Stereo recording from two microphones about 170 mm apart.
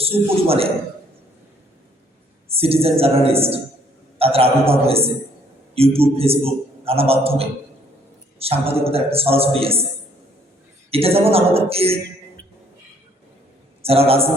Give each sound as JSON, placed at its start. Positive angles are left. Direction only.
{"t": 0.0, "sound": "a man's voice", "side_deg": -35}
{"t": 2.5, "sound": "a woman's voice", "side_deg": -35}
{"t": 10.9, "sound": "a man's voice", "side_deg": -35}
{"t": 13.8, "sound": "a man's voice", "side_deg": -35}